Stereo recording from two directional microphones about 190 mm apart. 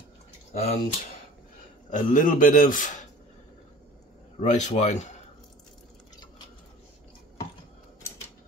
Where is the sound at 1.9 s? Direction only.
45° left (ahead or behind).